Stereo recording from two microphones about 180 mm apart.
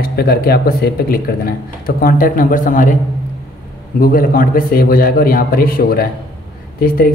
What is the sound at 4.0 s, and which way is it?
Speech, 55° left (ahead or behind).